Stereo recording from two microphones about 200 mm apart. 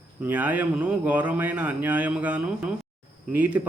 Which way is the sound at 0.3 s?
10° right (ahead or behind).